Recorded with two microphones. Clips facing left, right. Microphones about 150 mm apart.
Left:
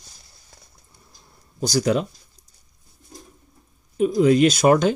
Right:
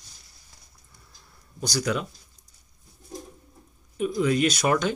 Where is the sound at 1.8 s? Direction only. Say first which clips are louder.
Left 6 dB; 35° left (ahead or behind).